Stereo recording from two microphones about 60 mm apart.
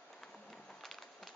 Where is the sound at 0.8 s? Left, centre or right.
Centre.